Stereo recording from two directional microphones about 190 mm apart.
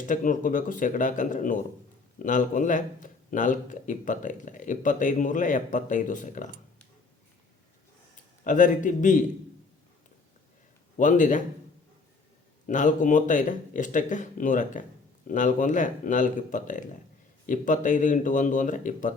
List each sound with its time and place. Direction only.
0.0 s speech: 45° left (ahead or behind)
8.4 s a man's voice: 40° left (ahead or behind)
10.9 s a man's voice: 40° left (ahead or behind)
12.6 s speech: 40° left (ahead or behind)